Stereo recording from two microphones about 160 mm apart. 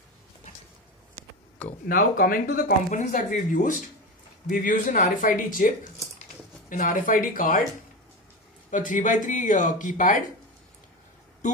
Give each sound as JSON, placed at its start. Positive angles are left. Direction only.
{"t": 1.9, "sound": "speech", "side_deg": 65}
{"t": 3.0, "sound": "speech", "side_deg": 50}
{"t": 6.7, "sound": "speech", "side_deg": 60}
{"t": 8.6, "sound": "speech", "side_deg": 55}